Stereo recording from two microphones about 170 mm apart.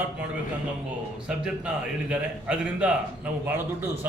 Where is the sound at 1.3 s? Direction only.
5° right (ahead or behind).